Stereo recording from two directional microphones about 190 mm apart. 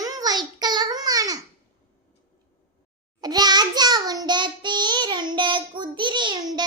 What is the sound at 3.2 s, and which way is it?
Child singing, 20° right (ahead or behind).